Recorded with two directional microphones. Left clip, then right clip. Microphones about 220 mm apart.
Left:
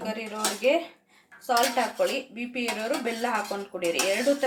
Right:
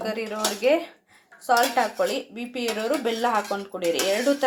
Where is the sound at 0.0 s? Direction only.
20° right (ahead or behind).